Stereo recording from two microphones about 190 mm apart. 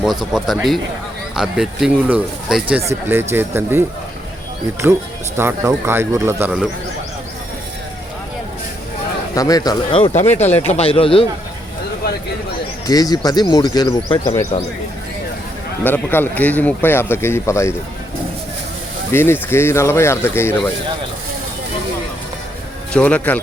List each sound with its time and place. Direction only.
0.0 s speech: centre (ahead or behind)
5.4 s speech: 15° right (ahead or behind)
9.3 s a man's voice: 20° left (ahead or behind)
12.9 s speech: 20° left (ahead or behind)
15.8 s speech: 10° left (ahead or behind)
19.1 s speech: 10° left (ahead or behind)
22.9 s speech: 5° left (ahead or behind)